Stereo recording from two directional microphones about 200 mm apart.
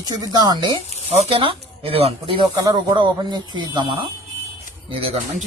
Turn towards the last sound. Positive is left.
turn(degrees=-30)  # may be behind; listen again after turning